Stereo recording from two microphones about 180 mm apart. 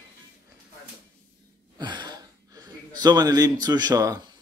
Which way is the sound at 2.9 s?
20° right (ahead or behind).